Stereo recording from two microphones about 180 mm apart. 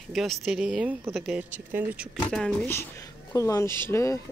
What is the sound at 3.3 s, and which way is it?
Speech, 15° left (ahead or behind).